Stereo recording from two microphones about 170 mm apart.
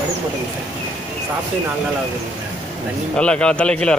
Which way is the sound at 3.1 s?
5° left (ahead or behind).